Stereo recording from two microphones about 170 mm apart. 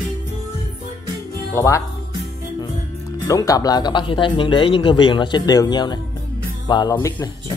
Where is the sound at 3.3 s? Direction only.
20° left (ahead or behind).